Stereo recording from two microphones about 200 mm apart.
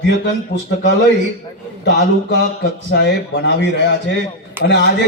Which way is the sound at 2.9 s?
60° left (ahead or behind).